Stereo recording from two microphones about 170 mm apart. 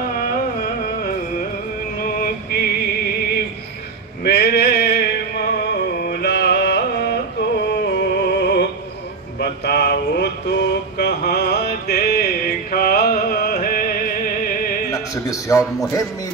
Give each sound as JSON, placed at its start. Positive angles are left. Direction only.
{"t": 0.2, "sound": "carnatic music", "side_deg": 60}
{"t": 2.0, "sound": "music", "side_deg": 60}
{"t": 4.2, "sound": "a sound", "side_deg": 75}
{"t": 6.0, "sound": "music", "side_deg": 75}
{"t": 9.4, "sound": "a sound", "side_deg": 75}
{"t": 12.7, "sound": "music", "side_deg": 60}
{"t": 14.9, "sound": "a man's voice", "side_deg": 20}